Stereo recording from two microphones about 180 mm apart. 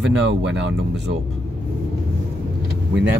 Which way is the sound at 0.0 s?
90° right.